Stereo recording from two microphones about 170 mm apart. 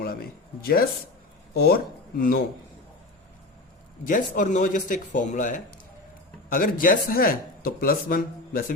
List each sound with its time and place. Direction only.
0.0 s speech: 65° left (ahead or behind)
4.0 s speech: 50° left (ahead or behind)